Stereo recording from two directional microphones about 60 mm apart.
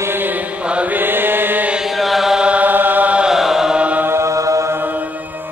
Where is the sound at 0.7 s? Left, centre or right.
Right.